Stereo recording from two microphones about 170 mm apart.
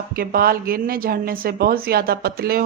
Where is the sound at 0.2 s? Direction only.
60° right (ahead or behind).